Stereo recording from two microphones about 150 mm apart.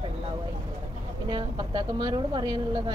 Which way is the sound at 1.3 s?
30° right (ahead or behind).